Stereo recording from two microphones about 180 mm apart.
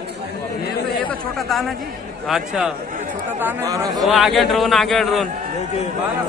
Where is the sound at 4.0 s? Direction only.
Centre (ahead or behind).